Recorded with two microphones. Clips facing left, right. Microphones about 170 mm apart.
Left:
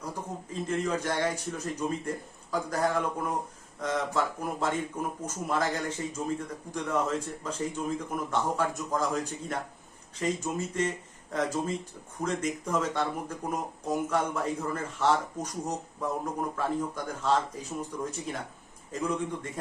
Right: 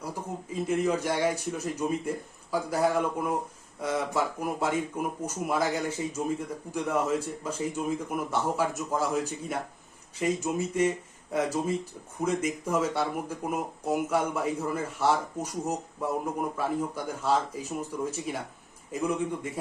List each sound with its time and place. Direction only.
0.5 s speech: 10° right (ahead or behind)